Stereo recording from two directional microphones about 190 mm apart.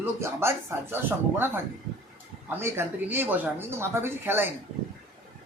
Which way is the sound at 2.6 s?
15° right (ahead or behind).